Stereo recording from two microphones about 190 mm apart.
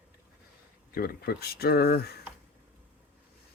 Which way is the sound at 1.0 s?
55° left (ahead or behind).